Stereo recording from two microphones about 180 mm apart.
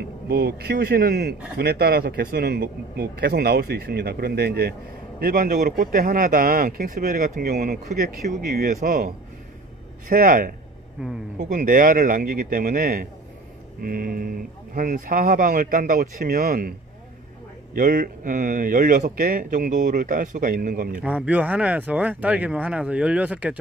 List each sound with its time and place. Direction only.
0.3 s speech: 60° right (ahead or behind)
11.0 s speech: 5° right (ahead or behind)
11.3 s speech: 45° right (ahead or behind)
17.7 s speech: 50° right (ahead or behind)
21.0 s speech: 10° right (ahead or behind)